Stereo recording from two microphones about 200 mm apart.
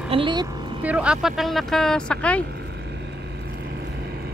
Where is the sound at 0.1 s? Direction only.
25° right (ahead or behind).